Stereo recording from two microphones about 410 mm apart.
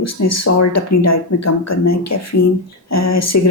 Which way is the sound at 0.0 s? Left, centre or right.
Left.